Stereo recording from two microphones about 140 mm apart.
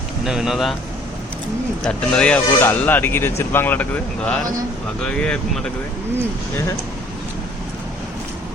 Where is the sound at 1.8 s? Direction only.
5° left (ahead or behind).